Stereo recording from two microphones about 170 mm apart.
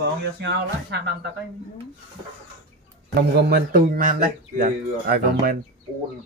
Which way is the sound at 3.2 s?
70° right (ahead or behind).